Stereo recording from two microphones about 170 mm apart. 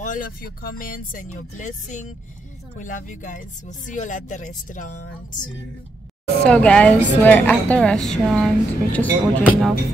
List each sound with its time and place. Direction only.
0.0 s speech: 50° left (ahead or behind)
6.4 s speech: 5° left (ahead or behind)